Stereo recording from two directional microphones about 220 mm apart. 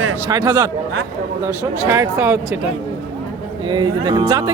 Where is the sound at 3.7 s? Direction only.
20° right (ahead or behind).